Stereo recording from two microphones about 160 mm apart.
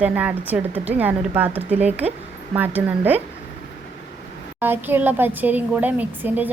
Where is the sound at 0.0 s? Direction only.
10° right (ahead or behind).